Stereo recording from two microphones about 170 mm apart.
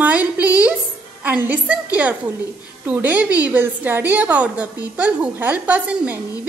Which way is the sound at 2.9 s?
10° right (ahead or behind).